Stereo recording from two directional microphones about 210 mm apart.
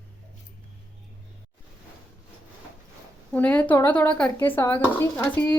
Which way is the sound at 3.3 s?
5° left (ahead or behind).